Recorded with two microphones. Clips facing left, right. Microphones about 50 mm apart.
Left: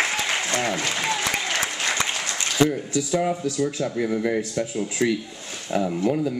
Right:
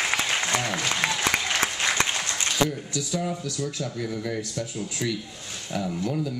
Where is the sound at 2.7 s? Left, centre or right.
Left.